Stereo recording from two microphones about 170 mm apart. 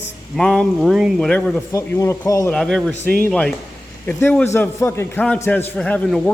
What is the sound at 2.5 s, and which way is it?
A man's voice, 5° left (ahead or behind).